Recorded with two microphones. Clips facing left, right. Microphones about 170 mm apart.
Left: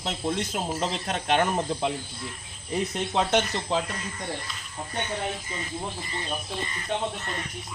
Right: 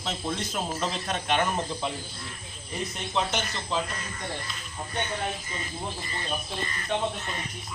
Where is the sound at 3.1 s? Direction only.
65° left (ahead or behind).